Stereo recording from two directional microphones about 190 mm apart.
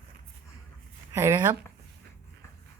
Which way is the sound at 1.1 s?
15° right (ahead or behind).